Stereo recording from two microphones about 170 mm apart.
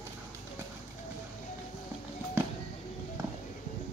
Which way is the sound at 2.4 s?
15° right (ahead or behind).